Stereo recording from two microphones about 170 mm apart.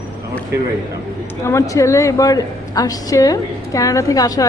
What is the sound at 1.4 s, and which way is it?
A woman's voice, 15° left (ahead or behind).